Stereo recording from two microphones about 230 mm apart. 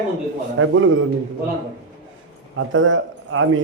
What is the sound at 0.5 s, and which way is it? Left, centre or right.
Speech, right.